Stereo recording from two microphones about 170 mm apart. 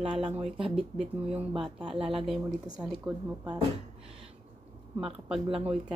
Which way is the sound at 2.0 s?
35° right (ahead or behind).